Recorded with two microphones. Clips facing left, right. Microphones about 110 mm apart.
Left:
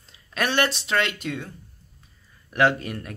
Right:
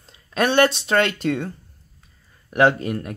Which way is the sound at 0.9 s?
45° right (ahead or behind).